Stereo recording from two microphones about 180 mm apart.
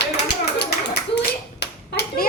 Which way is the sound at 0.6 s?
65° left (ahead or behind).